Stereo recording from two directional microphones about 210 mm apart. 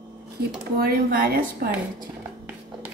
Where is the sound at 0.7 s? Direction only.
45° right (ahead or behind).